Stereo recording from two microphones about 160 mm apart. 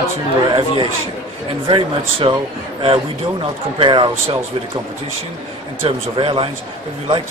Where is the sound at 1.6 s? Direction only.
30° right (ahead or behind).